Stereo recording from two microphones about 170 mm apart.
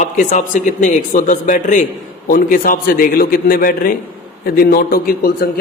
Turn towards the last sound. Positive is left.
turn(degrees=60)  # may be behind; listen again after turning